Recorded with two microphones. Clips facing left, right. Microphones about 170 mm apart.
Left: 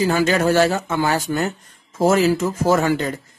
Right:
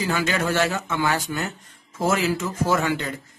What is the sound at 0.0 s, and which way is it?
Speech, 35° left (ahead or behind).